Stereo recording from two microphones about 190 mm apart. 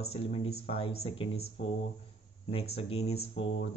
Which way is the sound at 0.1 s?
30° left (ahead or behind).